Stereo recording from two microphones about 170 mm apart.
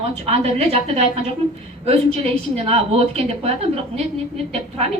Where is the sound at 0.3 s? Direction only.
35° right (ahead or behind).